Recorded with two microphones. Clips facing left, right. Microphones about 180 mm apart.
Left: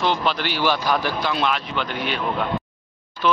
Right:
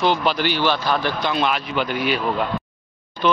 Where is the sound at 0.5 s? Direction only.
10° left (ahead or behind); by 2.2 s 5° right (ahead or behind).